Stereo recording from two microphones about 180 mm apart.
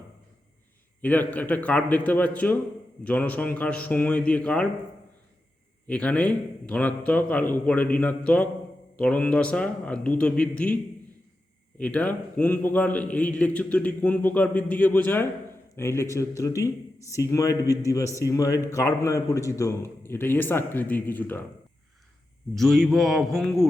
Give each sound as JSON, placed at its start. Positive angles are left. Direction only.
{"t": 1.0, "sound": "a man's voice", "side_deg": 10}
{"t": 5.9, "sound": "a man's voice", "side_deg": 5}
{"t": 11.8, "sound": "a man's voice", "side_deg": 10}
{"t": 22.5, "sound": "a man's voice", "side_deg": 0}